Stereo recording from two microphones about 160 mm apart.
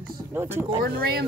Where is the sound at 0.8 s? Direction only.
70° right (ahead or behind).